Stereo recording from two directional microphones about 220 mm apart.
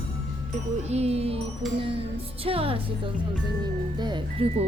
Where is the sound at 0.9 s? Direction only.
30° right (ahead or behind).